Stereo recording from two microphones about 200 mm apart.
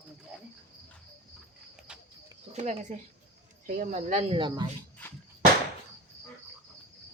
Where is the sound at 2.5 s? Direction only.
35° right (ahead or behind).